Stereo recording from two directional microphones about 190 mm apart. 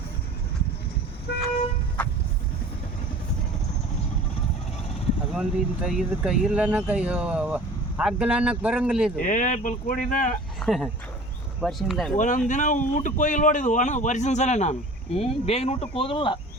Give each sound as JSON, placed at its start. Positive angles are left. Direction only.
{"t": 5.3, "sound": "speech", "side_deg": -5}
{"t": 9.1, "sound": "speech", "side_deg": 45}
{"t": 10.6, "sound": "speech", "side_deg": 0}
{"t": 12.1, "sound": "a man's voice", "side_deg": 40}